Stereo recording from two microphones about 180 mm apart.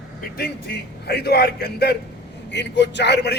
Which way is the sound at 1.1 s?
65° left (ahead or behind).